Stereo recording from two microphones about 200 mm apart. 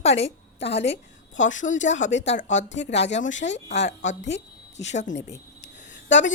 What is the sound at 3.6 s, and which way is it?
Speech, 35° left (ahead or behind).